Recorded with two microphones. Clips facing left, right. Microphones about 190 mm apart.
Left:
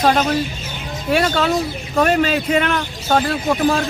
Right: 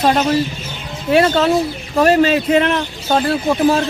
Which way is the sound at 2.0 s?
Centre (ahead or behind).